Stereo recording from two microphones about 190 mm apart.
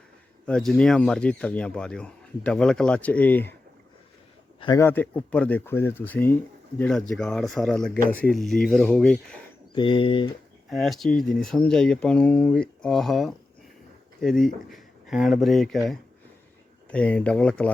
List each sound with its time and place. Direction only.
0.4 s speech: 5° left (ahead or behind)
4.6 s speech: 15° left (ahead or behind)
9.7 s speech: 25° left (ahead or behind)
10.7 s speech: centre (ahead or behind)
16.9 s speech: 5° left (ahead or behind)